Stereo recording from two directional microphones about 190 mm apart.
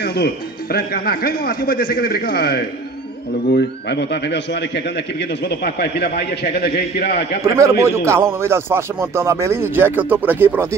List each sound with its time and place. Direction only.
0.7 s a man's voice: 50° left (ahead or behind)
5.8 s a man's voice: 60° left (ahead or behind)
7.4 s speech: 15° right (ahead or behind)